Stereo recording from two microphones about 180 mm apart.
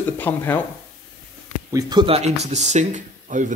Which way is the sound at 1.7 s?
20° right (ahead or behind).